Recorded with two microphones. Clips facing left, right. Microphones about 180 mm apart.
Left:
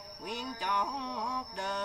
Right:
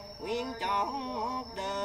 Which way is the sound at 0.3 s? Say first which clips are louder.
Right 3 dB; 20° right (ahead or behind).